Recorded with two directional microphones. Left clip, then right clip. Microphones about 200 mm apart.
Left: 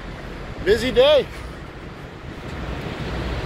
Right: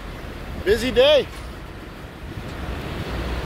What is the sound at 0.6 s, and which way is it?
Speech, 20° right (ahead or behind).